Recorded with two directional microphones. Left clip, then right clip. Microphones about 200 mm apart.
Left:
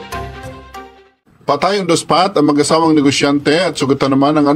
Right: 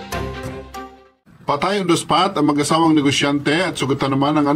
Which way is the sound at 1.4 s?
40° left (ahead or behind).